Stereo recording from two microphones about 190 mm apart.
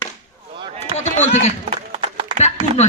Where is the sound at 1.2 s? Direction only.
35° left (ahead or behind).